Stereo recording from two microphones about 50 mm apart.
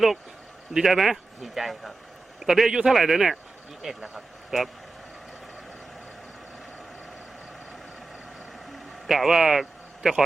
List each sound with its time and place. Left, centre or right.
0.7 s a man's voice: centre
9.0 s speech: centre